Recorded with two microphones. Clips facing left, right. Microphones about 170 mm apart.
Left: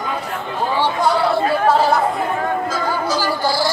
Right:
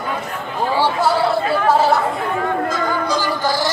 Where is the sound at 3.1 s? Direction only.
10° left (ahead or behind).